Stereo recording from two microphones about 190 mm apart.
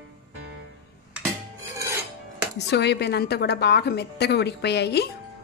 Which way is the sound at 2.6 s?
65° left (ahead or behind).